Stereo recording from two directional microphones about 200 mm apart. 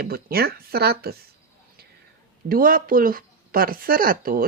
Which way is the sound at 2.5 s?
45° right (ahead or behind).